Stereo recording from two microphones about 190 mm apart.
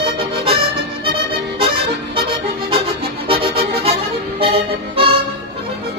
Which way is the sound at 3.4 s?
55° right (ahead or behind).